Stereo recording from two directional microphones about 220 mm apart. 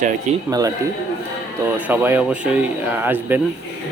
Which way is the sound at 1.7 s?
10° right (ahead or behind).